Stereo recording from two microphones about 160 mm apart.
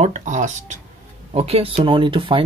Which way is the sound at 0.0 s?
50° right (ahead or behind).